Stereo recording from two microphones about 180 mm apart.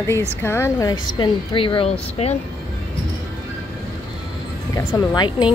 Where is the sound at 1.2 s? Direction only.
30° left (ahead or behind).